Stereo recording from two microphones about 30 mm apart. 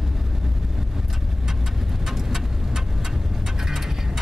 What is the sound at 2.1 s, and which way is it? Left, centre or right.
Vehicle, centre.